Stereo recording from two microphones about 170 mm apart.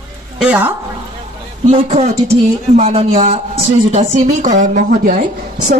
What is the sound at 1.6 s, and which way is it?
A woman's voice, 35° right (ahead or behind).